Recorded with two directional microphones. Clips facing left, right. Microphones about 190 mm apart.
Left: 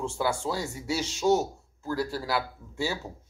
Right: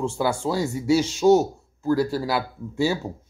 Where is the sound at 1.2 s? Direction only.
35° right (ahead or behind).